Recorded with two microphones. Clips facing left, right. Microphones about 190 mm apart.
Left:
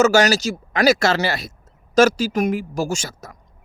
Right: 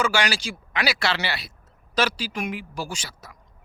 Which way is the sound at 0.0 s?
45° left (ahead or behind).